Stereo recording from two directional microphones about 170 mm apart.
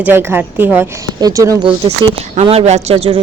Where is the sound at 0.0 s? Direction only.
15° right (ahead or behind).